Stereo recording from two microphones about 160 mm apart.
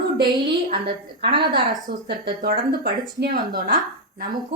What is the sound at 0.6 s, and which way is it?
Speech, 80° right.